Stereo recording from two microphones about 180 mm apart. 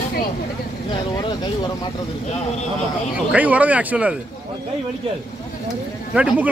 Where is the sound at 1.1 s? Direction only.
20° left (ahead or behind).